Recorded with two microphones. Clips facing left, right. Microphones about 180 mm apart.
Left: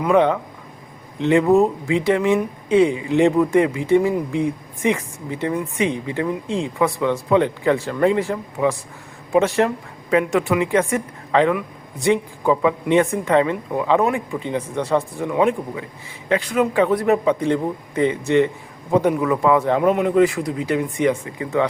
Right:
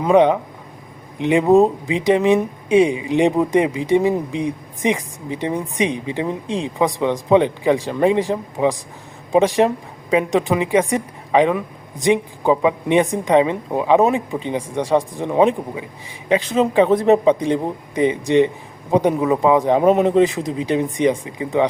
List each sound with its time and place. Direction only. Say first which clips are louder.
0.0 s speech: right 3 dB; 20° right (ahead or behind)